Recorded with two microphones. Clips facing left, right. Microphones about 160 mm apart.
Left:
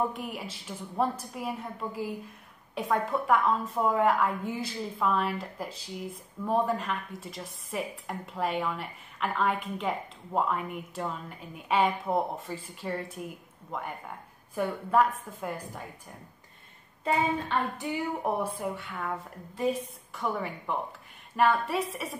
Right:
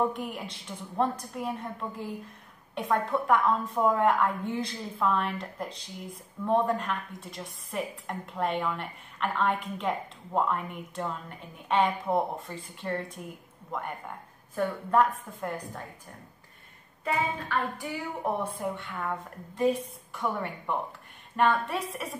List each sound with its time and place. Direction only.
0.1 s speech: centre (ahead or behind)
17.0 s a sound: 20° left (ahead or behind)
18.2 s speech: 5° left (ahead or behind)